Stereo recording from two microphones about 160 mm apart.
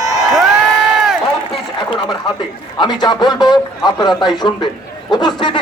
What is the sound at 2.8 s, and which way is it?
A man's voice, 25° left (ahead or behind).